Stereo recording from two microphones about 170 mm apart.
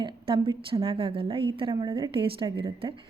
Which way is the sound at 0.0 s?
30° right (ahead or behind).